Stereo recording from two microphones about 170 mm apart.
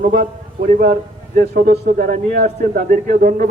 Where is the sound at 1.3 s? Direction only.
55° right (ahead or behind).